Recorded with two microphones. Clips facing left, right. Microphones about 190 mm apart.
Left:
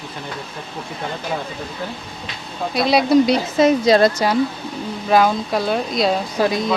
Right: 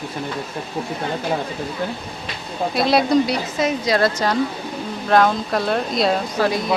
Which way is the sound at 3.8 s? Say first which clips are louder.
Left 3 dB; 25° left (ahead or behind).